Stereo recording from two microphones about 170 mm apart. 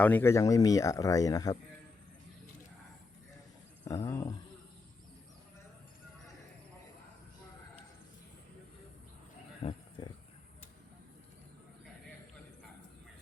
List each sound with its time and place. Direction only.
0.0 s speech: 10° left (ahead or behind)
3.8 s speech: 20° left (ahead or behind)
9.6 s speech: 40° left (ahead or behind)